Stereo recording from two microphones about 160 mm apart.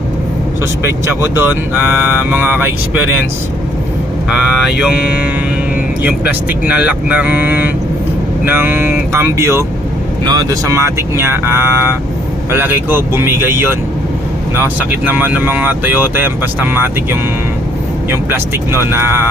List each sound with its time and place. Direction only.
1.2 s speech: 10° right (ahead or behind)
4.3 s speech: 5° right (ahead or behind)